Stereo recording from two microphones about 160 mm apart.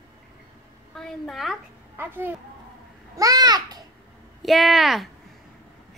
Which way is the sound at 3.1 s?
20° right (ahead or behind).